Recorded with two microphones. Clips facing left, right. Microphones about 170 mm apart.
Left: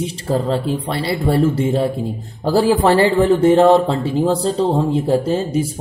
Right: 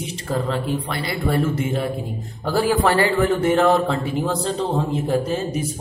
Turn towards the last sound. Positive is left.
turn(degrees=30)  # may be behind; listen again after turning